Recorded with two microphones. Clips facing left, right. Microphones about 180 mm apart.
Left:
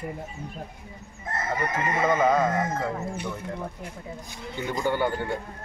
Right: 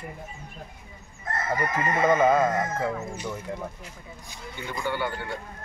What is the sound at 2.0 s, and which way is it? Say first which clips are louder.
Music: right 2 dB; 5° right (ahead or behind).